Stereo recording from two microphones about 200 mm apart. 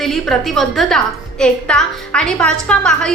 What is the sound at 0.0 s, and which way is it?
A woman's voice, centre (ahead or behind).